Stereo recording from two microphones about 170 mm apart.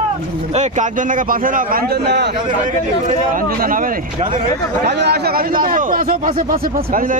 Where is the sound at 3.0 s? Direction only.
55° right (ahead or behind).